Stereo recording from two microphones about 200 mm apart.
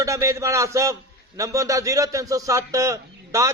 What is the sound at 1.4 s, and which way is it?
A man's voice, 15° right (ahead or behind).